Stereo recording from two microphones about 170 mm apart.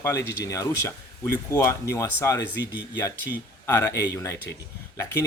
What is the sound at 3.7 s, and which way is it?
Speech, 15° left (ahead or behind).